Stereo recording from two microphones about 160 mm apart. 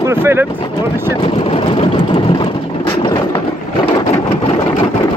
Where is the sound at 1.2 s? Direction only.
35° left (ahead or behind).